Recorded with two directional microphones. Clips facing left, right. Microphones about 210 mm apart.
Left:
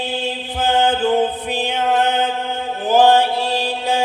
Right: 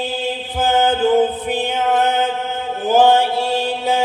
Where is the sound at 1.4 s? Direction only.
50° right (ahead or behind).